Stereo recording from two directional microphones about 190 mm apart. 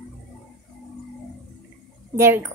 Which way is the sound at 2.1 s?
15° right (ahead or behind).